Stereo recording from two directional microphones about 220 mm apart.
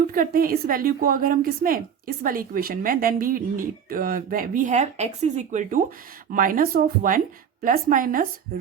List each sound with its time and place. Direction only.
0.1 s a woman's voice: 40° right (ahead or behind)